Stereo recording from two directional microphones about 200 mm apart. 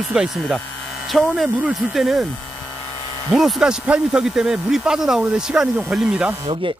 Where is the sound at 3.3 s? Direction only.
Centre (ahead or behind).